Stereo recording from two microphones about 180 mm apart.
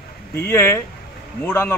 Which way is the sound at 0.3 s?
15° left (ahead or behind).